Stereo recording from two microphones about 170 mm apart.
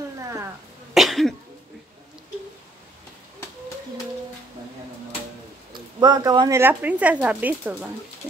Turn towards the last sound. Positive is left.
turn(degrees=-10)  # may be behind; listen again after turning